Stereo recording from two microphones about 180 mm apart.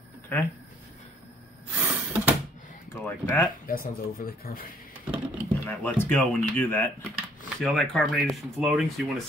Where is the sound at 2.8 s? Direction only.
15° left (ahead or behind).